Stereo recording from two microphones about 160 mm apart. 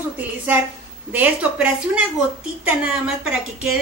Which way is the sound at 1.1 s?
10° right (ahead or behind).